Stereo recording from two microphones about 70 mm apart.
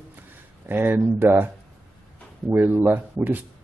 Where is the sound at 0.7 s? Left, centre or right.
Right.